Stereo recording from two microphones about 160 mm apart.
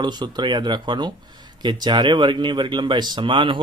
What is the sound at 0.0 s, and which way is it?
Speech, 25° right (ahead or behind).